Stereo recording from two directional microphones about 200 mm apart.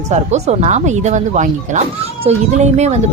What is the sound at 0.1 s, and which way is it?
Speech, 35° right (ahead or behind).